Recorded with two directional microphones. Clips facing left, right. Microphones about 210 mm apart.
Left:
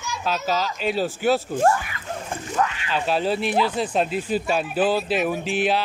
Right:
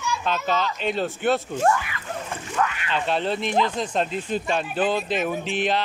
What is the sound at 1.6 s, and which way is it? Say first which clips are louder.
Speech: left 2 dB; 35° left (ahead or behind).